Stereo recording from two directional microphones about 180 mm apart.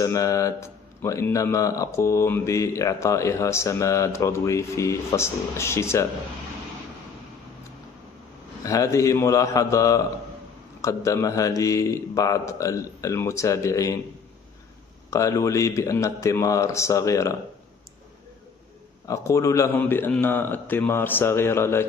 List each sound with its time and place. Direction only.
0.0 s a man's voice: 20° left (ahead or behind)
8.6 s a man's voice: 15° left (ahead or behind)
15.0 s a man's voice: 20° left (ahead or behind)
19.0 s a man's voice: 15° left (ahead or behind)